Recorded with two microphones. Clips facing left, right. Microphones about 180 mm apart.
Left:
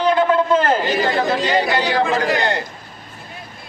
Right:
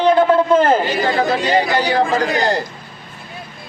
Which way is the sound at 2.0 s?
35° right (ahead or behind).